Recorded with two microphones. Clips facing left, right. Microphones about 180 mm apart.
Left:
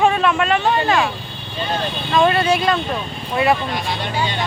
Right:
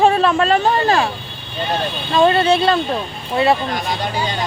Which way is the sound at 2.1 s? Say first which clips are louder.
Right 2 dB; 30° right (ahead or behind).